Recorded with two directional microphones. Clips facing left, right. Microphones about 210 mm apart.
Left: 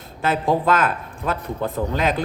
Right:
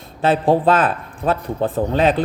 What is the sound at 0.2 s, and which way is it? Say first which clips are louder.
Speech: right 5 dB; 30° right (ahead or behind).